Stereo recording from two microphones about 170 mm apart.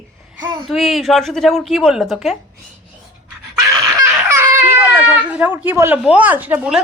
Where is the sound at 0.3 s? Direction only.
25° right (ahead or behind).